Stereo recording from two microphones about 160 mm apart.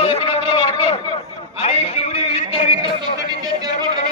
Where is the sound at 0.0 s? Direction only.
35° left (ahead or behind).